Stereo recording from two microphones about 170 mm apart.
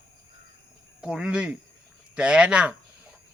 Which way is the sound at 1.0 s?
5° right (ahead or behind).